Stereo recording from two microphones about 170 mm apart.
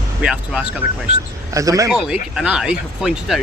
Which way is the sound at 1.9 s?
5° right (ahead or behind).